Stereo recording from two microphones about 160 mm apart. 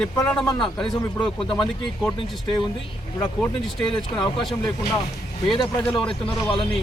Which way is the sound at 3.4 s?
5° left (ahead or behind).